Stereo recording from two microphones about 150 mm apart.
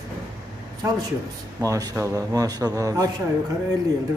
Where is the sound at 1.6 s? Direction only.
20° right (ahead or behind).